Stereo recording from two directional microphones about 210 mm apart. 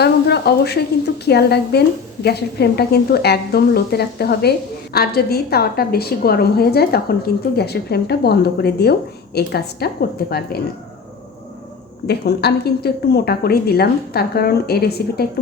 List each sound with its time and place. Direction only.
0.0 s sizzle: 50° left (ahead or behind)
1.2 s a woman's voice: 50° left (ahead or behind)
12.0 s a woman's voice: 50° left (ahead or behind)